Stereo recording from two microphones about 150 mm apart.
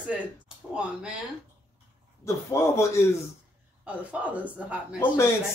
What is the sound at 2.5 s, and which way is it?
Speech, 20° left (ahead or behind).